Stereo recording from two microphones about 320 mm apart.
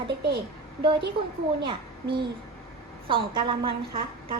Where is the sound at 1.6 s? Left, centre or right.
Centre.